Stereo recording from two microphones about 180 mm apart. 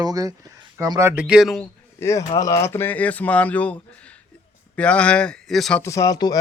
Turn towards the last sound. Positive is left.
turn(degrees=20)  # may be behind; listen again after turning